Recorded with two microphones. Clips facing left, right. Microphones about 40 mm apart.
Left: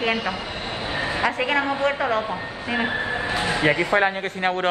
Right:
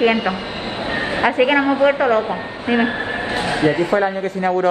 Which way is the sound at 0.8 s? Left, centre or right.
Right.